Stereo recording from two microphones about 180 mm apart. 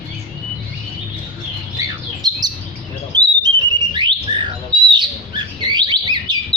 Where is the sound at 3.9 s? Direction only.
25° right (ahead or behind).